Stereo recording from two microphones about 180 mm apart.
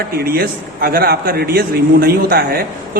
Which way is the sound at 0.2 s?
55° right (ahead or behind).